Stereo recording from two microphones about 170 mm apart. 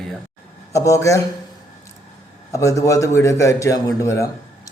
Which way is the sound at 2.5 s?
20° left (ahead or behind).